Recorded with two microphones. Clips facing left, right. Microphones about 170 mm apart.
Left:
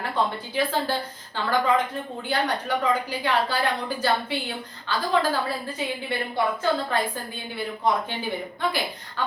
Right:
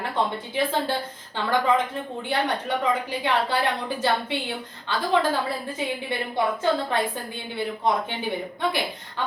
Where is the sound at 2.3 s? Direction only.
25° right (ahead or behind).